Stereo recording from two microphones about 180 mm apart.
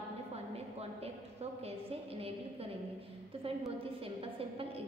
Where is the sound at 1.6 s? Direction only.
35° right (ahead or behind).